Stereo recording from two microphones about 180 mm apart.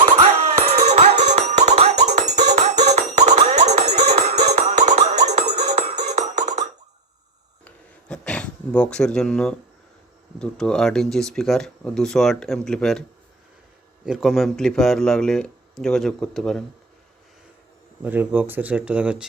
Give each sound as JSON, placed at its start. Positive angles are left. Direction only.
{"t": 0.2, "sound": "music", "side_deg": -35}
{"t": 7.6, "sound": "a sound", "side_deg": 5}
{"t": 10.3, "sound": "speech", "side_deg": 5}
{"t": 18.0, "sound": "speech", "side_deg": -10}